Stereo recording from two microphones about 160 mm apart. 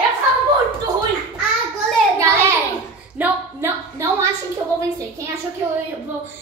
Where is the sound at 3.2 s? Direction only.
15° right (ahead or behind).